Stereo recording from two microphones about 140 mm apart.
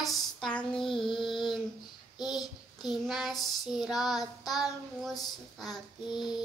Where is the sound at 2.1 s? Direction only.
30° left (ahead or behind).